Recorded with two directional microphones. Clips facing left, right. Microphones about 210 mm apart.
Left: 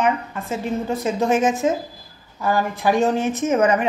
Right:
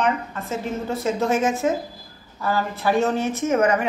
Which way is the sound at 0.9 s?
15° left (ahead or behind).